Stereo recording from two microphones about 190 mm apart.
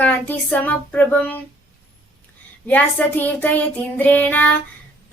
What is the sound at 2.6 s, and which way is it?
Speech, 10° left (ahead or behind).